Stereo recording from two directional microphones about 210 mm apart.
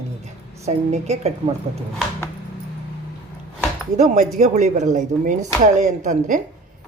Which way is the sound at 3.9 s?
35° right (ahead or behind).